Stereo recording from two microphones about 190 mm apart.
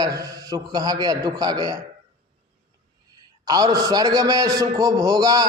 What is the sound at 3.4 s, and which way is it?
A man's voice, 20° right (ahead or behind).